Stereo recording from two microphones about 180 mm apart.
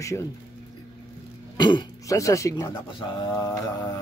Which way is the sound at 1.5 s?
25° left (ahead or behind).